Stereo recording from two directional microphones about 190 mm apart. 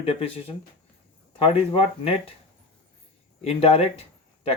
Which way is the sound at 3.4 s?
30° left (ahead or behind).